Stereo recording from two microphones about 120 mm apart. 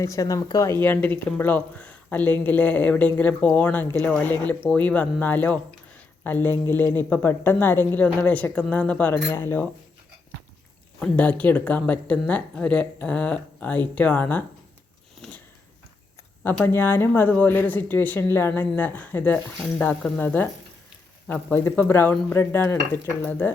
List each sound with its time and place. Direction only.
0.0 s a woman's voice: 25° left (ahead or behind)
11.0 s a woman's voice: 10° left (ahead or behind)
16.6 s a woman's voice: 20° left (ahead or behind)
21.5 s a woman's voice: 15° left (ahead or behind)